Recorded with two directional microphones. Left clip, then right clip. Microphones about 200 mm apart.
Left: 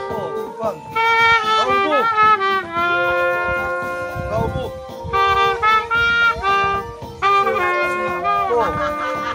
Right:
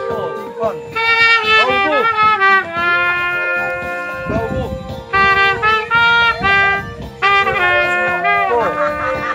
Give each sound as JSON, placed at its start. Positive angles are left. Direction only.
{"t": 0.9, "sound": "music", "side_deg": -35}
{"t": 5.1, "sound": "music", "side_deg": -30}